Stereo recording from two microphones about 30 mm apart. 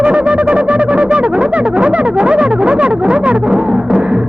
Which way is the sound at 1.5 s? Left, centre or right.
Right.